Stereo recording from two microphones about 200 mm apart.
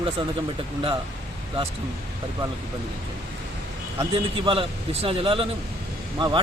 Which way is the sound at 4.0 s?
25° right (ahead or behind).